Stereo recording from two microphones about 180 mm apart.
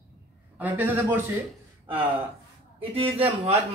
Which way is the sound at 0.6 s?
10° right (ahead or behind).